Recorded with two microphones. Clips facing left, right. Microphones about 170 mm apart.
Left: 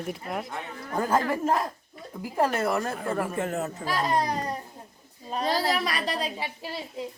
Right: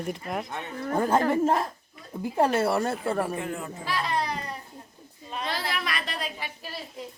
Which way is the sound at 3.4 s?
45° left (ahead or behind).